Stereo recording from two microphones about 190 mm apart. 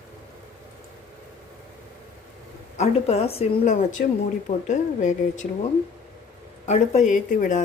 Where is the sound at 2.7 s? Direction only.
35° left (ahead or behind).